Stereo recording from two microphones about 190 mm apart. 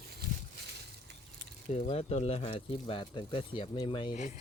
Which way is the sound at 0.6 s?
60° right (ahead or behind).